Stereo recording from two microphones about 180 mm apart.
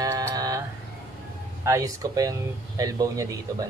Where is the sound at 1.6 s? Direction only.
15° right (ahead or behind).